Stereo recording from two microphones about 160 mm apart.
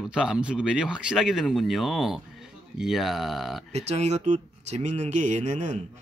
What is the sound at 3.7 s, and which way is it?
Speech, 45° right (ahead or behind).